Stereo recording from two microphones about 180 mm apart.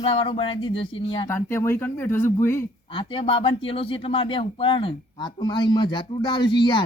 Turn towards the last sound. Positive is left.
turn(degrees=25)  # may be behind; listen again after turning